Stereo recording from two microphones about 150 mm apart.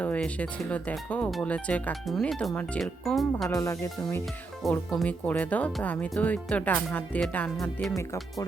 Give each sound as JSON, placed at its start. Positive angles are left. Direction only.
{"t": 0.0, "sound": "speech", "side_deg": 10}
{"t": 3.5, "sound": "speech", "side_deg": 20}
{"t": 4.6, "sound": "speech", "side_deg": 0}
{"t": 7.9, "sound": "speech", "side_deg": 20}